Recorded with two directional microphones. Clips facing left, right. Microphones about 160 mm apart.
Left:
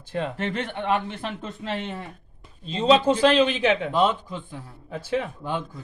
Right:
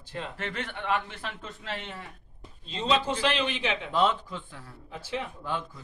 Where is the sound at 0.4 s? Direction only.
20° left (ahead or behind).